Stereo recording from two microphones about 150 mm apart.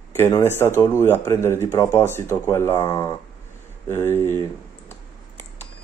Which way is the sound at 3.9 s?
15° left (ahead or behind).